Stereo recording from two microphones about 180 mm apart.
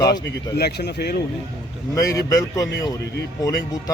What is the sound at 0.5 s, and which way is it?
Speech, 65° left (ahead or behind).